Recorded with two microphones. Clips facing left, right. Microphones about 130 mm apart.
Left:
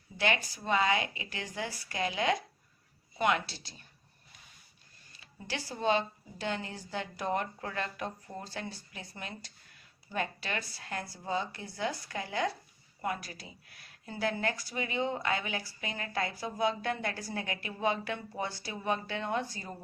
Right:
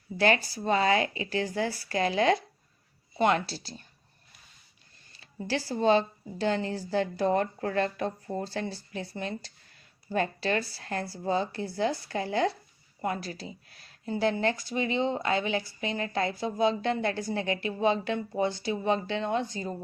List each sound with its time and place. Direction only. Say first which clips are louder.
0.2 s speech: right 6 dB; 35° right (ahead or behind)
5.1 s speech: right 8 dB; 35° right (ahead or behind)